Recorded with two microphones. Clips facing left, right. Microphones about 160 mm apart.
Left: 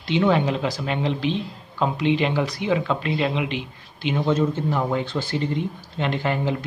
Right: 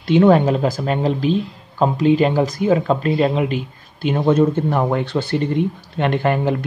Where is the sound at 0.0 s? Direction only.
50° right (ahead or behind).